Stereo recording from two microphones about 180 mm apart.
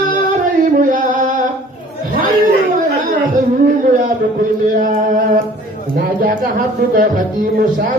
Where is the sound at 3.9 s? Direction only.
45° right (ahead or behind).